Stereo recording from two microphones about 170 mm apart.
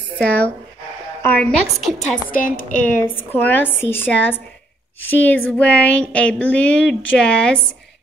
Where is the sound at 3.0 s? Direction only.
10° left (ahead or behind).